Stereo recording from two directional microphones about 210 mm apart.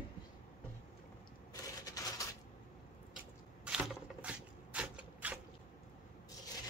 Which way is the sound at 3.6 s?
5° right (ahead or behind).